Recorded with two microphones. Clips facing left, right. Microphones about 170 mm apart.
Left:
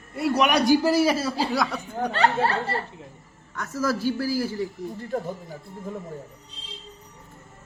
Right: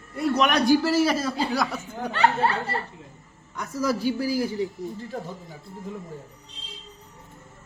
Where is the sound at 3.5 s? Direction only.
15° right (ahead or behind).